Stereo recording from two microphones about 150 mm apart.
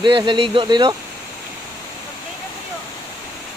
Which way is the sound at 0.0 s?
30° right (ahead or behind).